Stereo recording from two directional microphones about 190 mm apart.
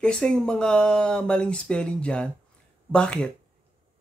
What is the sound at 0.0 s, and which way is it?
Speech, 5° left (ahead or behind).